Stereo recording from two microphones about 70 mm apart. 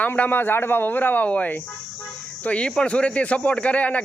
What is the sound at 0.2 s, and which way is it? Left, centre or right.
Speech, left.